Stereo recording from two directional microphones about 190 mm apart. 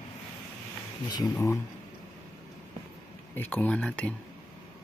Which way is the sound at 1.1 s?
15° left (ahead or behind).